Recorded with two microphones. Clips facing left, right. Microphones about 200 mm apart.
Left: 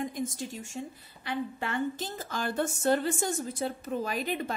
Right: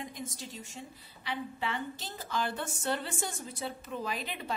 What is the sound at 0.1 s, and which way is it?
A woman's voice, 50° left (ahead or behind).